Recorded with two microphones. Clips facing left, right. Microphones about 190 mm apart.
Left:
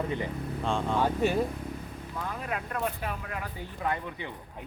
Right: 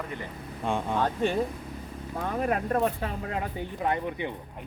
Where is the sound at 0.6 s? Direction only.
15° right (ahead or behind).